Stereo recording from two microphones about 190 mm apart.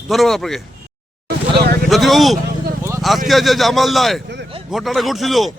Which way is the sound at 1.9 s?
Centre (ahead or behind).